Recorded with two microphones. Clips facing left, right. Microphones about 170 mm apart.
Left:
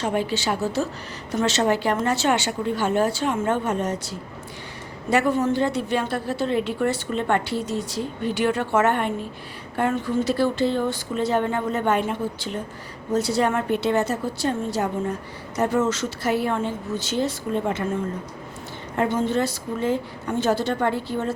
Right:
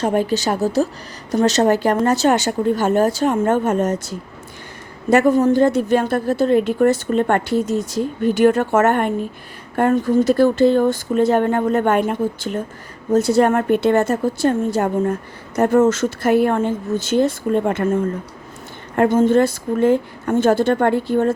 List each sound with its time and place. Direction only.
0.0 s a woman's voice: 45° right (ahead or behind)